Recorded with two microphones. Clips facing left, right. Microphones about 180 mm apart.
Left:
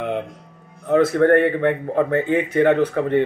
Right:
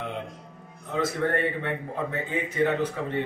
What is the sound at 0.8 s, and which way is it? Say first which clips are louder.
A man's voice: left 12 dB; 60° left (ahead or behind).